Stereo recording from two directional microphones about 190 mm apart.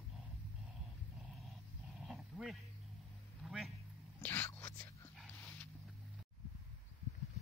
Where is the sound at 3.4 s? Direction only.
Centre (ahead or behind).